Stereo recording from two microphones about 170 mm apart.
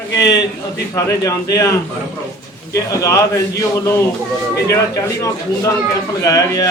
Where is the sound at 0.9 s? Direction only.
20° left (ahead or behind).